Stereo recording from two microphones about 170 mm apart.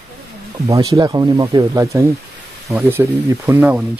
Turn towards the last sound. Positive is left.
turn(degrees=-10)  # may be behind; listen again after turning